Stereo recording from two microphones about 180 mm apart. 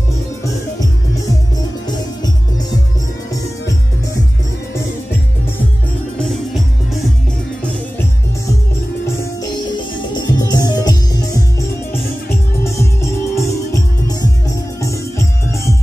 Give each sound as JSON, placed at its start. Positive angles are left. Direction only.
{"t": 0.4, "sound": "music", "side_deg": 20}
{"t": 6.1, "sound": "music", "side_deg": 0}
{"t": 9.0, "sound": "music", "side_deg": 20}
{"t": 13.3, "sound": "music", "side_deg": 20}